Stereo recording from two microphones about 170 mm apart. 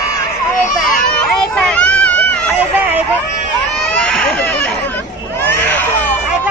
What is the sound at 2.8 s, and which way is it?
Vehicle, 10° right (ahead or behind).